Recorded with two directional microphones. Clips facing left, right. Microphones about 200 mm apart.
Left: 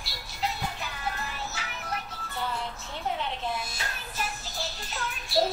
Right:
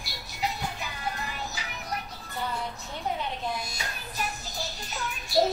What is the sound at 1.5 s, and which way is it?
Music, 5° left (ahead or behind).